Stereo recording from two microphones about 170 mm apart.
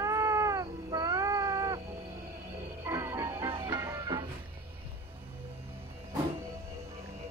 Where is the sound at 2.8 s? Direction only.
15° right (ahead or behind).